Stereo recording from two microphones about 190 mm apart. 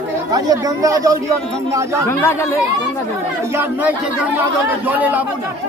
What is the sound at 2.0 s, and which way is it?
Speech, 15° left (ahead or behind).